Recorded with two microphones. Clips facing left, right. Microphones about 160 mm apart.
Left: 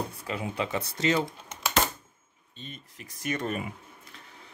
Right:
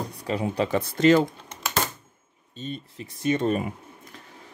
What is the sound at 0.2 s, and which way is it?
Speech, 35° right (ahead or behind).